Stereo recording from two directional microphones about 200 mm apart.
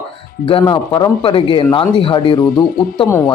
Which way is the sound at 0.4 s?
25° left (ahead or behind).